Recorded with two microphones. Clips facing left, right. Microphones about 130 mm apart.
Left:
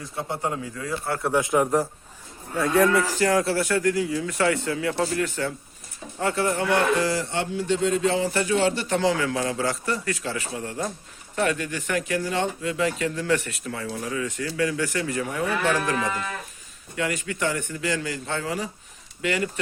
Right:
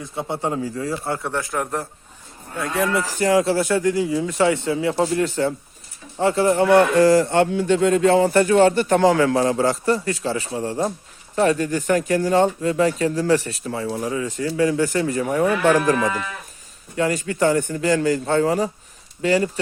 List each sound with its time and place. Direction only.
0.0 s speech: 25° right (ahead or behind)
1.5 s a man's voice: 5° left (ahead or behind)
3.2 s speech: 20° right (ahead or behind); by 15.8 s 45° right (ahead or behind)
16.9 s speech: 35° right (ahead or behind)